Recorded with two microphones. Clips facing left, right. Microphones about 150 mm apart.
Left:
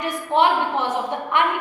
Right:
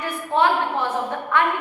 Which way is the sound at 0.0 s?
20° left (ahead or behind).